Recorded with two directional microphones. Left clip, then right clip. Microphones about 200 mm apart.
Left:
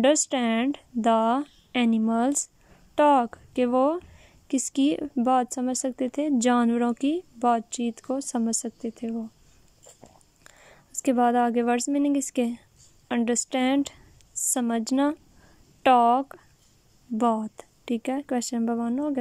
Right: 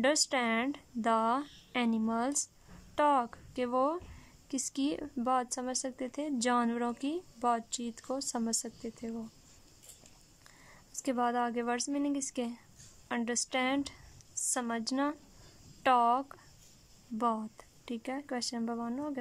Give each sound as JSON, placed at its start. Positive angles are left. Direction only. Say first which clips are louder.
{"t": 0.0, "sound": "speech", "louder": "left 7 dB", "side_deg": 15}
{"t": 10.4, "sound": "speech", "louder": "left 6 dB", "side_deg": 15}